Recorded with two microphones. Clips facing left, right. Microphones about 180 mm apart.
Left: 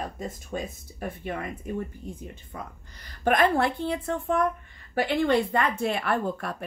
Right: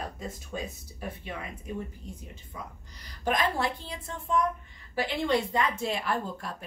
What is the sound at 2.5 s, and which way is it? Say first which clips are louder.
A woman's voice: even; 60° left (ahead or behind).